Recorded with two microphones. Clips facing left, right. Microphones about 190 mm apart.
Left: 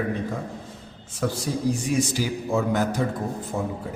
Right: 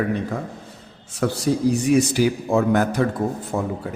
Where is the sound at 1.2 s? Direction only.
75° right (ahead or behind).